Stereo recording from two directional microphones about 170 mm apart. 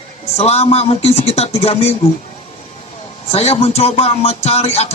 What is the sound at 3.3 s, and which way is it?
Speech, 35° left (ahead or behind).